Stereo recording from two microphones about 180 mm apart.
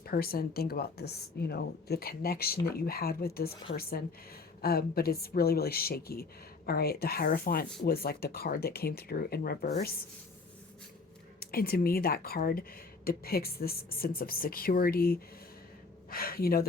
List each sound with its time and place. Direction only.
0.0 s a woman's voice: 55° left (ahead or behind)
11.3 s a woman's voice: 55° left (ahead or behind)